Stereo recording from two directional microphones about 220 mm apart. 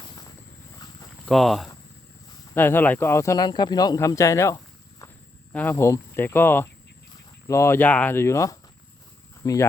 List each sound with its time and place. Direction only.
1.2 s speech: centre (ahead or behind)